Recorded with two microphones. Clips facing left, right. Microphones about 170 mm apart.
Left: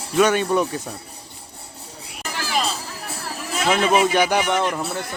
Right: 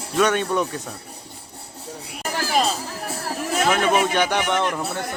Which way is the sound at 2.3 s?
45° right (ahead or behind).